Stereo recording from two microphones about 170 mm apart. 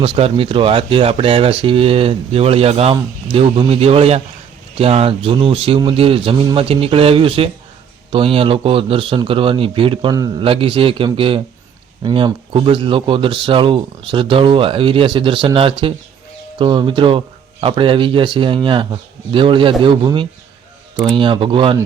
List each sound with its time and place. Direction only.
0.0 s speech: 35° right (ahead or behind)